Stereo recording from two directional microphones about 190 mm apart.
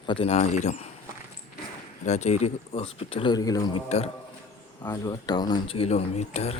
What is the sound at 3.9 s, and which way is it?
Speech, 35° left (ahead or behind).